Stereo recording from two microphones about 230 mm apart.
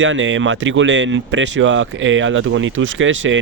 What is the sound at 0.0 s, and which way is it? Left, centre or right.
Speech, right.